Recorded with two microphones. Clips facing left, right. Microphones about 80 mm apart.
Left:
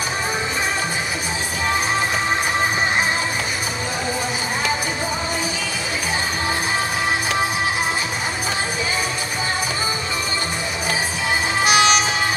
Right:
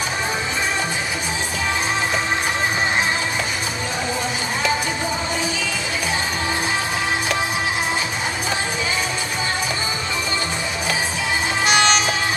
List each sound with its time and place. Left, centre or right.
11.6 s music: centre